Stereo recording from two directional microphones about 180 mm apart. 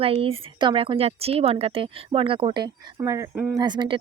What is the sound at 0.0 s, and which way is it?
A woman's voice, 30° right (ahead or behind).